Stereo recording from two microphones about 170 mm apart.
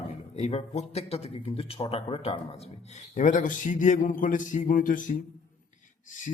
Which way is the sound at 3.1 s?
50° left (ahead or behind).